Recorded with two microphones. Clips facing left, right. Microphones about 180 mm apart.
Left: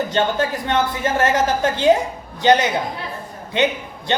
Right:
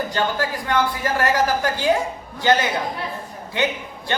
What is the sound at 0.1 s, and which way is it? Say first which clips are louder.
A woman's voice: left 3 dB; 25° left (ahead or behind).